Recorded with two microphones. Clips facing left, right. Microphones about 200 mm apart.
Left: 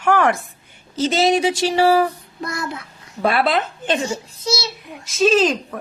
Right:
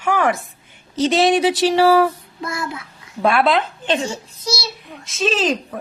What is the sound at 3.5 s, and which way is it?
Speech, 45° left (ahead or behind).